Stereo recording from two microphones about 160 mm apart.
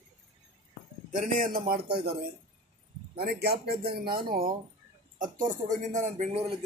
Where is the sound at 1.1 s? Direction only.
55° right (ahead or behind); by 2.1 s 75° right (ahead or behind).